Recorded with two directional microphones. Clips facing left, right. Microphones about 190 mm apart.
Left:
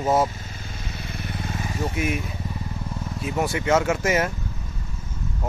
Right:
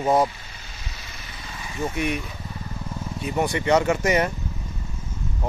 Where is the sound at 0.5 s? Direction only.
50° left (ahead or behind).